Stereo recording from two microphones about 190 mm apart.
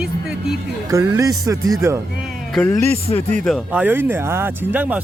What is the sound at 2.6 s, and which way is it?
Speech, 15° left (ahead or behind).